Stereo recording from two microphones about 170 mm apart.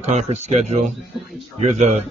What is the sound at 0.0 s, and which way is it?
Speech, 40° right (ahead or behind).